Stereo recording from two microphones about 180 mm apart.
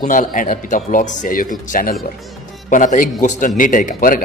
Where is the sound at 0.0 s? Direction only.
45° left (ahead or behind).